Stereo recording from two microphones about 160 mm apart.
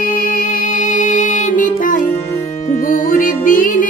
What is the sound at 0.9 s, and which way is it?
Music, 55° left (ahead or behind).